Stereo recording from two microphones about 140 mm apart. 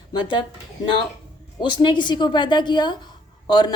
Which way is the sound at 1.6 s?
35° left (ahead or behind).